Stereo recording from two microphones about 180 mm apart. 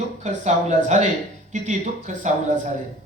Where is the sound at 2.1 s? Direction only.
40° right (ahead or behind).